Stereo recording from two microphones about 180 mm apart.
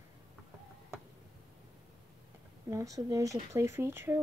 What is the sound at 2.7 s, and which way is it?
Speech, 20° right (ahead or behind).